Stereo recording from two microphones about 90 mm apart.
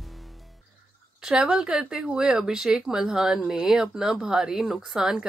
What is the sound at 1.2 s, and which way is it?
Speech, 10° right (ahead or behind).